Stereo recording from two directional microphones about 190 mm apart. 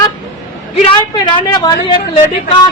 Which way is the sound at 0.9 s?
25° left (ahead or behind).